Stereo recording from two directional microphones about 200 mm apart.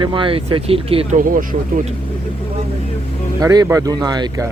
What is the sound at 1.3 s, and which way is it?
Speech, 45° right (ahead or behind).